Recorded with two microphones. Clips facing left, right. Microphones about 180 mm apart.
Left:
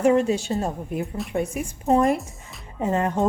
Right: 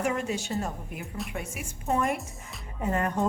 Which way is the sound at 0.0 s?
30° left (ahead or behind).